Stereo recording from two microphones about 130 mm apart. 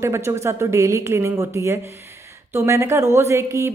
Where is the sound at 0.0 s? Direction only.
20° right (ahead or behind).